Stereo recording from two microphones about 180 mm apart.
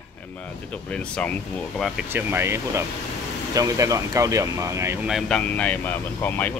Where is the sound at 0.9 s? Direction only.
5° left (ahead or behind).